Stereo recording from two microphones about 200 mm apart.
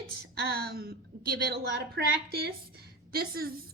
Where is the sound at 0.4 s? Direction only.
50° right (ahead or behind).